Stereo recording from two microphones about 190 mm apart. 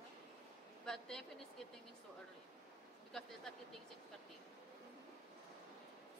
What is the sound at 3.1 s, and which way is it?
Speech, 5° left (ahead or behind).